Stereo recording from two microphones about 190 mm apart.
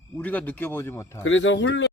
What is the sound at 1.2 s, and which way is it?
Speech, 90° left.